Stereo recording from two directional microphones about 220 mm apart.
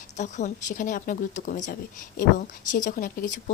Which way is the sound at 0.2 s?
35° left (ahead or behind).